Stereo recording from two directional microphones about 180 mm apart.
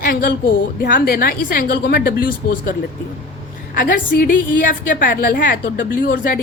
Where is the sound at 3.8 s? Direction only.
50° left (ahead or behind).